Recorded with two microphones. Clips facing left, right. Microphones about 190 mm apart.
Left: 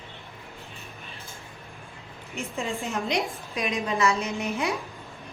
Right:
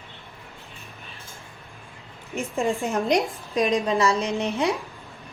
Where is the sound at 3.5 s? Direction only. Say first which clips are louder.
Right 7 dB; 35° right (ahead or behind).